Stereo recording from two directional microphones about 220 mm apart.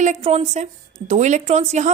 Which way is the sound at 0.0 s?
30° right (ahead or behind).